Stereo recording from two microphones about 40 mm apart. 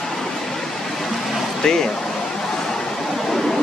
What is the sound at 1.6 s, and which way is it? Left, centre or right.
Speech, centre.